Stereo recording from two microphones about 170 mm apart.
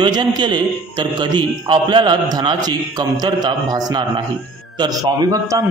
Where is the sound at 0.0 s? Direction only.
25° right (ahead or behind).